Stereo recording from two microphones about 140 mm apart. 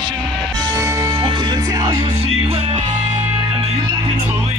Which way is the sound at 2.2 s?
45° right (ahead or behind).